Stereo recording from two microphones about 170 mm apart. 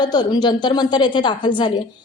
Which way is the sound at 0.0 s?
25° left (ahead or behind).